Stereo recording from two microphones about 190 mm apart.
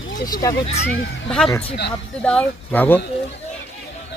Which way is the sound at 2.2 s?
5° left (ahead or behind).